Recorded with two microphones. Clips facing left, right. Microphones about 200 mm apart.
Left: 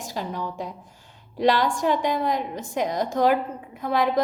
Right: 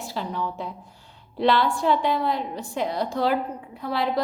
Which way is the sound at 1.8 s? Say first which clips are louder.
Right 1 dB; 55° left (ahead or behind).